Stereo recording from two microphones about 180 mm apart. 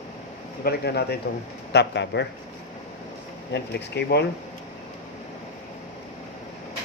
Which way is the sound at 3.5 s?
70° left (ahead or behind).